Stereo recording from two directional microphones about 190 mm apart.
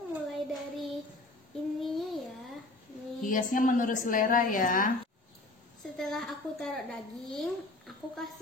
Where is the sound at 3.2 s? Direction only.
45° left (ahead or behind).